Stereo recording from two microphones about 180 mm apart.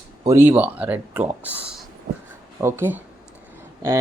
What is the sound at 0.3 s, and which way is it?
Speech, 10° right (ahead or behind).